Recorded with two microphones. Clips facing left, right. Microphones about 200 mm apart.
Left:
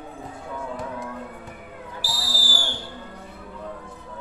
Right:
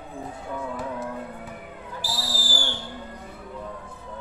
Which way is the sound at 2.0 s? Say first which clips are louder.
Right 2 dB; 20° right (ahead or behind).